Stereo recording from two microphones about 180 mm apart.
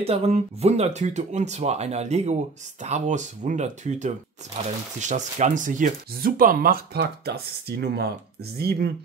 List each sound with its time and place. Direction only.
0.0 s speech: 35° right (ahead or behind); by 8.9 s 60° right (ahead or behind)